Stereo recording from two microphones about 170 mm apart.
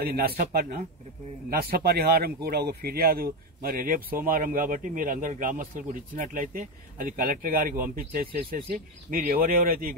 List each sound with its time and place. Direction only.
0.0 s speech: 60° right (ahead or behind)